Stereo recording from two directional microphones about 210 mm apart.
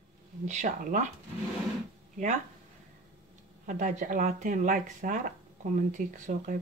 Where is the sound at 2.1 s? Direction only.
35° right (ahead or behind).